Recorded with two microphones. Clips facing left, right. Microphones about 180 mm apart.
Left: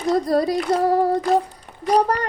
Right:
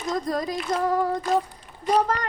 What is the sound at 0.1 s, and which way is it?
A child's voice, 35° left (ahead or behind).